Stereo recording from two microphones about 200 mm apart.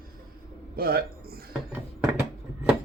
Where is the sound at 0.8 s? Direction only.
50° right (ahead or behind).